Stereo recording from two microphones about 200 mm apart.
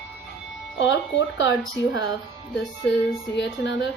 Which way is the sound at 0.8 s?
65° left (ahead or behind).